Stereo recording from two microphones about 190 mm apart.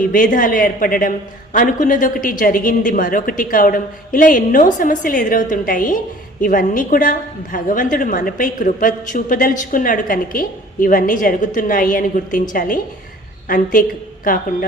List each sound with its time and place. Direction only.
0.1 s a woman's voice: 45° left (ahead or behind)